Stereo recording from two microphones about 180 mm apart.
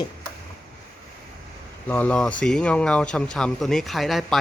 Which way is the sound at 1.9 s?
10° left (ahead or behind).